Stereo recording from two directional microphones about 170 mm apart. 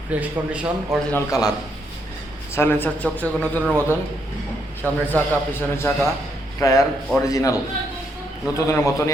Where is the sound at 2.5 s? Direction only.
15° left (ahead or behind).